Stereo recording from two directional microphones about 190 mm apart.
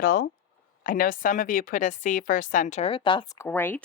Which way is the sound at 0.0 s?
50° left (ahead or behind).